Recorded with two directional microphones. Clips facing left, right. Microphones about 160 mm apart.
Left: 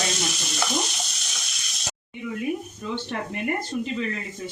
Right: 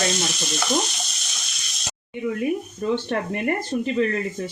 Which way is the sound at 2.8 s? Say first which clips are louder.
Right 8 dB; 50° right (ahead or behind).